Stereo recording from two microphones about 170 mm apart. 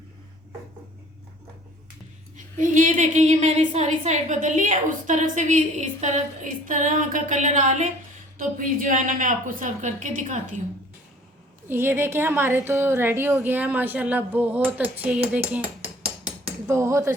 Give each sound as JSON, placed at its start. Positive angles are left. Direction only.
{"t": 2.3, "sound": "a woman's voice", "side_deg": -50}
{"t": 11.7, "sound": "a woman's voice", "side_deg": -15}
{"t": 16.0, "sound": "a sound", "side_deg": -35}
{"t": 16.6, "sound": "a woman's voice", "side_deg": -15}